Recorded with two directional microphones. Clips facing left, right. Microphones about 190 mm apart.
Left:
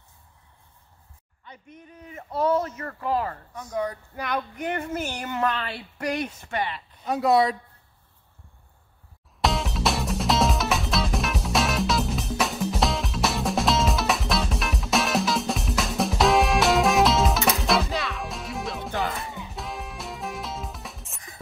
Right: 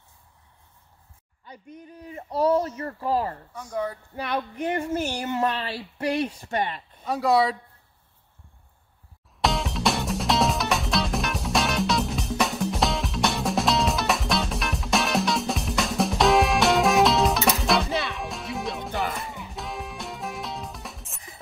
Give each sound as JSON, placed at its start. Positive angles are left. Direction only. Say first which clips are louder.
{"t": 1.5, "sound": "a woman's voice", "louder": "right 3 dB", "side_deg": -35}
{"t": 3.5, "sound": "speech", "louder": "left 2 dB", "side_deg": -10}
{"t": 4.1, "sound": "female singing", "louder": "right 1 dB", "side_deg": -30}
{"t": 4.9, "sound": "a woman's voice", "louder": "right 3 dB", "side_deg": -30}
{"t": 7.1, "sound": "speech", "louder": "left 1 dB", "side_deg": 0}
{"t": 9.4, "sound": "music", "louder": "even", "side_deg": 0}